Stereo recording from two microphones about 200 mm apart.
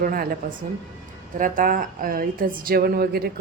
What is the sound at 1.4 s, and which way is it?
A woman's voice, 45° right (ahead or behind).